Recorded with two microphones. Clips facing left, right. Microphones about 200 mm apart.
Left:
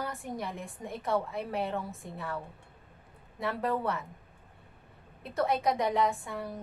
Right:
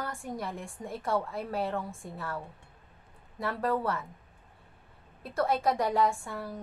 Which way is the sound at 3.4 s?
Centre (ahead or behind).